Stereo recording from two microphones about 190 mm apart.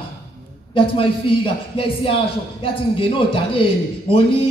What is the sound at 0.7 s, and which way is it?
Speech, 25° left (ahead or behind).